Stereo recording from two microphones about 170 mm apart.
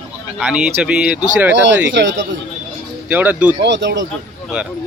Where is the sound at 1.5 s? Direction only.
90° right.